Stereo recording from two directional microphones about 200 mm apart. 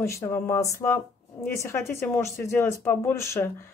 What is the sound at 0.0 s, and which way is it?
Speech, 10° left (ahead or behind).